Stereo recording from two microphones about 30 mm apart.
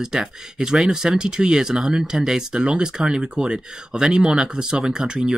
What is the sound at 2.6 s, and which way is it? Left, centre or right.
Speech, right.